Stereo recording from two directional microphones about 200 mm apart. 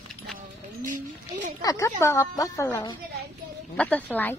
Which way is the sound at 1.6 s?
15° left (ahead or behind).